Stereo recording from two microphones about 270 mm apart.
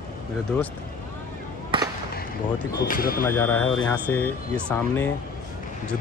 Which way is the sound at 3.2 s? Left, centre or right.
Centre.